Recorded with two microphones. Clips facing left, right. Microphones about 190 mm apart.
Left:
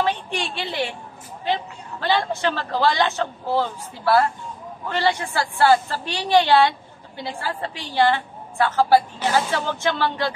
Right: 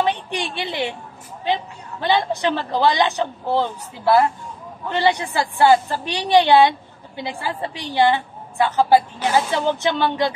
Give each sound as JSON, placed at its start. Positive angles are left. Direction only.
{"t": 0.0, "sound": "a woman's voice", "side_deg": -15}